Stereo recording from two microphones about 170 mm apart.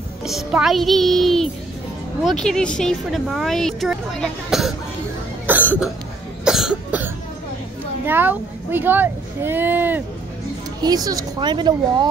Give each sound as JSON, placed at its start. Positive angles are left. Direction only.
{"t": 0.2, "sound": "speech", "side_deg": 0}
{"t": 5.5, "sound": "cough", "side_deg": -10}
{"t": 8.1, "sound": "speech", "side_deg": -10}
{"t": 11.1, "sound": "speech", "side_deg": -25}